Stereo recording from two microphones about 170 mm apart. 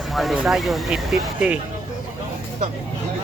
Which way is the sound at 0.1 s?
Centre (ahead or behind).